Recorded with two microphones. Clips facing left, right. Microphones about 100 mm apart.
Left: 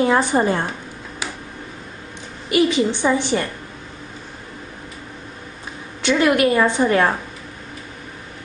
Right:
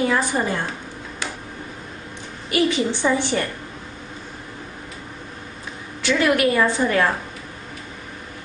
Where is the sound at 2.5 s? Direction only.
20° left (ahead or behind).